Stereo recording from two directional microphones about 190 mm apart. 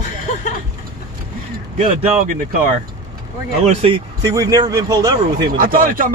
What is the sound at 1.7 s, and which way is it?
Speech, 40° right (ahead or behind).